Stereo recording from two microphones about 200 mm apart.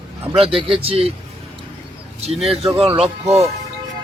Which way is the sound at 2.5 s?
30° right (ahead or behind).